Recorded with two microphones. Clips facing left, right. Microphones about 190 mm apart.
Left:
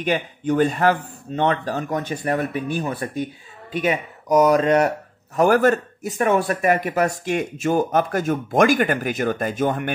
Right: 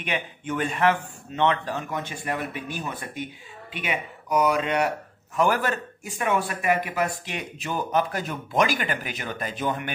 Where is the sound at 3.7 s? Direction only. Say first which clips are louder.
Left 8 dB; 40° left (ahead or behind).